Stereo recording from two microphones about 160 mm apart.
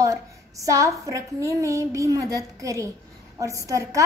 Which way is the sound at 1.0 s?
20° right (ahead or behind).